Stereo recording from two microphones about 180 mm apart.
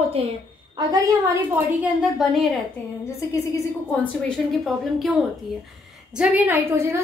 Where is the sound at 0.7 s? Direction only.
20° right (ahead or behind).